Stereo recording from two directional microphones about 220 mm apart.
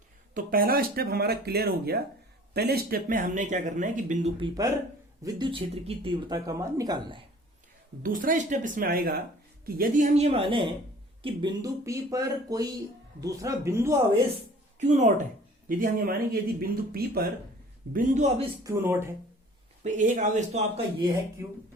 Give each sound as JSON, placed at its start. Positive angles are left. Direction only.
{"t": 0.3, "sound": "speech", "side_deg": -40}
{"t": 4.4, "sound": "speech", "side_deg": -20}
{"t": 8.0, "sound": "speech", "side_deg": -40}
{"t": 14.8, "sound": "speech", "side_deg": -30}
{"t": 15.8, "sound": "speech", "side_deg": -40}
{"t": 18.6, "sound": "speech", "side_deg": -10}
{"t": 19.8, "sound": "speech", "side_deg": -35}